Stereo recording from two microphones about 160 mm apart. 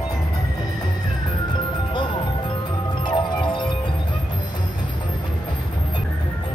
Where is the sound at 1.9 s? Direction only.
30° left (ahead or behind).